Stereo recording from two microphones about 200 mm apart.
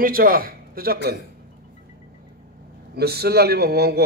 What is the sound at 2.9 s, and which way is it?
A man's voice, 50° right (ahead or behind).